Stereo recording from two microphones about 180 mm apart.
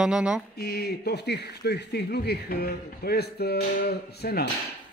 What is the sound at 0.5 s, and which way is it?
Speech, 60° left (ahead or behind).